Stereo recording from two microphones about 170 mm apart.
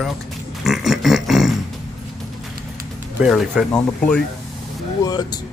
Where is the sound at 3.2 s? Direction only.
Centre (ahead or behind).